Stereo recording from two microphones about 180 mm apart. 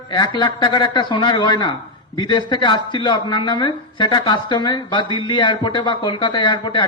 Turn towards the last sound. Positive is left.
turn(degrees=25)  # may be behind; listen again after turning